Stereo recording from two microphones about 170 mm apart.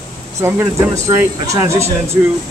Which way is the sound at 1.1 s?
15° right (ahead or behind).